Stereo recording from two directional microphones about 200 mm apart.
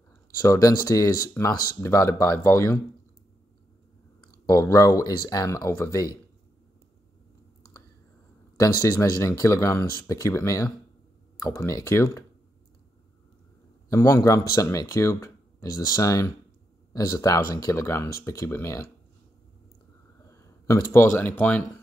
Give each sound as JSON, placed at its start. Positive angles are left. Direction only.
{"t": 0.4, "sound": "speech", "side_deg": 15}
{"t": 4.5, "sound": "speech", "side_deg": 15}
{"t": 8.5, "sound": "speech", "side_deg": 15}
{"t": 13.8, "sound": "speech", "side_deg": 15}
{"t": 20.2, "sound": "a sound", "side_deg": 15}
{"t": 20.9, "sound": "speech", "side_deg": 10}